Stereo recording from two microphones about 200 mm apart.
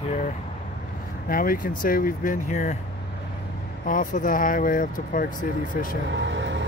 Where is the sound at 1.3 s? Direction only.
45° left (ahead or behind).